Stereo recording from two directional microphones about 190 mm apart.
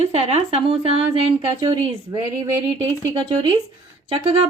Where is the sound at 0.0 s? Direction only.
35° right (ahead or behind).